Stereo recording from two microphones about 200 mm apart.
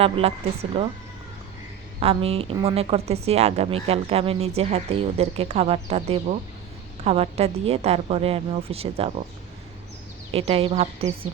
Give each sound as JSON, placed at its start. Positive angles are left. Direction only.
{"t": 0.0, "sound": "a woman's voice", "side_deg": -30}
{"t": 2.0, "sound": "a woman's voice", "side_deg": -30}
{"t": 10.3, "sound": "speech", "side_deg": -30}